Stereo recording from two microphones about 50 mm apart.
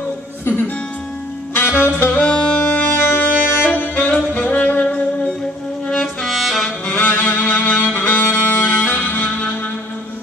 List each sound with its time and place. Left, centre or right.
1.5 s music: left
1.9 s saxophone: left
2.1 s music: centre
3.1 s saxophone: left
4.3 s music: left
5.9 s music: centre
6.9 s music: left